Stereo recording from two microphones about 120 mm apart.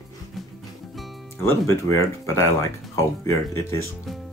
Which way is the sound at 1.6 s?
25° left (ahead or behind).